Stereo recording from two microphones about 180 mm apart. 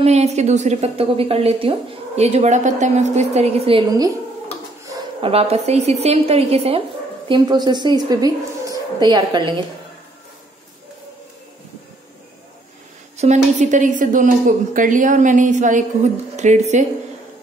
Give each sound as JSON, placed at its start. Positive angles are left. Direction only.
{"t": 0.0, "sound": "a woman's voice", "side_deg": -40}
{"t": 5.2, "sound": "a woman's voice", "side_deg": -35}
{"t": 13.2, "sound": "a woman's voice", "side_deg": -40}